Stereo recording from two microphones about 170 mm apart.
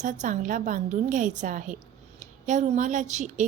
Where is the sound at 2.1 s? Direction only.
45° right (ahead or behind).